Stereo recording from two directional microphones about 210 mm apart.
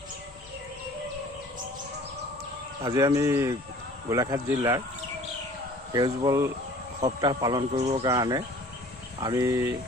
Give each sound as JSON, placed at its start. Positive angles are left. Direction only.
{"t": 2.8, "sound": "speech", "side_deg": -15}
{"t": 5.9, "sound": "a man's voice", "side_deg": -20}